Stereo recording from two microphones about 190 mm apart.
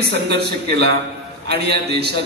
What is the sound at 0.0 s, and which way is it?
A man's voice, 60° right (ahead or behind).